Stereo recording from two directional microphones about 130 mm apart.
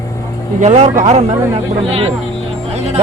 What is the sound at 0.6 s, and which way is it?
Speech, 65° right (ahead or behind).